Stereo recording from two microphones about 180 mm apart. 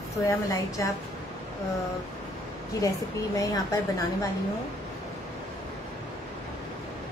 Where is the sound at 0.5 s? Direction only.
20° left (ahead or behind).